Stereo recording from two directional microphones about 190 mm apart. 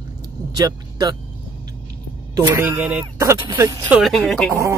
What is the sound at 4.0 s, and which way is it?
Speech, centre (ahead or behind).